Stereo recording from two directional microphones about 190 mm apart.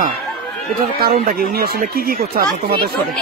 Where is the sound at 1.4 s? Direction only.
50° right (ahead or behind).